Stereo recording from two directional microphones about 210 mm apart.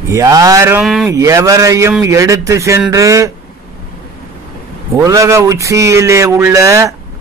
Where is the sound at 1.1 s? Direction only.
15° right (ahead or behind).